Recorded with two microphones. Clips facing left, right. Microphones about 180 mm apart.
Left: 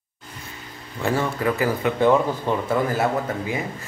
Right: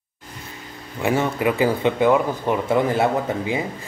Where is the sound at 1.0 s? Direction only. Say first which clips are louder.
Right 2 dB; 15° right (ahead or behind).